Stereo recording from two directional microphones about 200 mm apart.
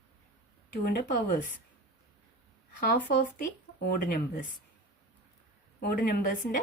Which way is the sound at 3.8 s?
45° left (ahead or behind).